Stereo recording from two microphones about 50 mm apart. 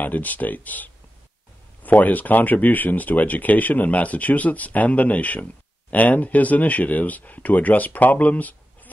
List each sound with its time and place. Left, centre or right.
0.0 s speech: left